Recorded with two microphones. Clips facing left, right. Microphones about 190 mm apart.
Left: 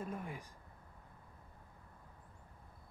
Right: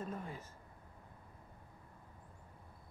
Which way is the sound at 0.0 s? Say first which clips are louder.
Even; 15° left (ahead or behind).